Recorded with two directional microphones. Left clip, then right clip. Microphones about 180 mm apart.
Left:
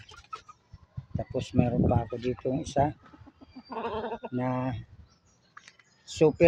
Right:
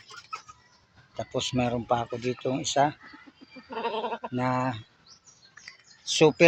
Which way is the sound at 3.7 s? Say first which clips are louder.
Right 3 dB; 55° left (ahead or behind).